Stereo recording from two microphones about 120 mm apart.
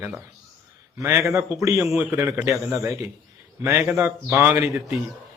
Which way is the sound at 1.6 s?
25° right (ahead or behind).